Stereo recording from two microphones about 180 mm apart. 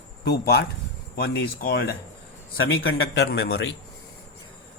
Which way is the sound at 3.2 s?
65° left (ahead or behind).